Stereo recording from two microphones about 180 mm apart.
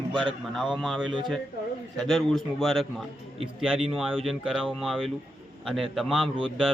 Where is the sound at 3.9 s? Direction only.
Centre (ahead or behind).